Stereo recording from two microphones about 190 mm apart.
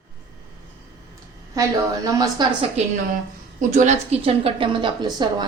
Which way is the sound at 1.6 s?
15° right (ahead or behind).